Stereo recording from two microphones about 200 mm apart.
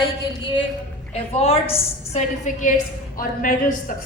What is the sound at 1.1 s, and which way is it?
A woman's voice, 30° left (ahead or behind).